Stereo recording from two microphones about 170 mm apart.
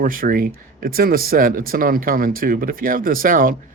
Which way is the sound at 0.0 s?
55° right (ahead or behind).